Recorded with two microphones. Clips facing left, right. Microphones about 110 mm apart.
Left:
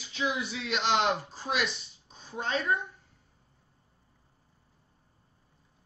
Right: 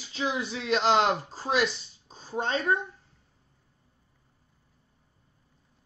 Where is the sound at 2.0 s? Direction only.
35° right (ahead or behind).